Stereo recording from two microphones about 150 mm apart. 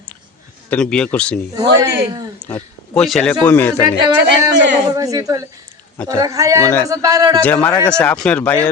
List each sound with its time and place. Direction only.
0.7 s speech: 5° left (ahead or behind)
1.5 s speech: 25° right (ahead or behind)
2.4 s a man's voice: 10° left (ahead or behind)
3.8 s speech: 25° right (ahead or behind)
7.4 s speech: 10° left (ahead or behind)